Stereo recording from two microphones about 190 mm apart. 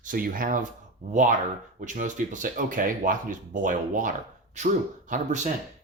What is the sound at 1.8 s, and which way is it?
Speech, 40° right (ahead or behind).